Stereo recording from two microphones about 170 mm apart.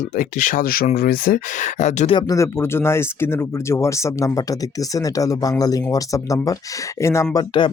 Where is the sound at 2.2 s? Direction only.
20° left (ahead or behind).